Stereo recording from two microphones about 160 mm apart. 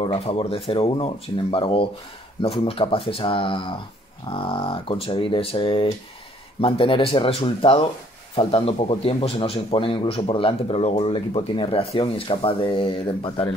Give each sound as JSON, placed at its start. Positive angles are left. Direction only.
{"t": 0.0, "sound": "a man's voice", "side_deg": 35}